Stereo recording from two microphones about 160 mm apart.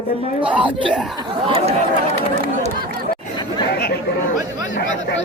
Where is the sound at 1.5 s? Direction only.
40° right (ahead or behind).